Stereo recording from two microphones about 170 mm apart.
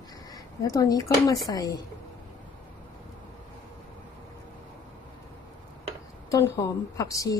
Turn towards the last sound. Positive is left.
turn(degrees=20)  # may be behind; listen again after turning